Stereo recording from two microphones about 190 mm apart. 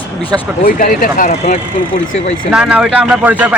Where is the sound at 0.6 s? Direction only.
45° left (ahead or behind).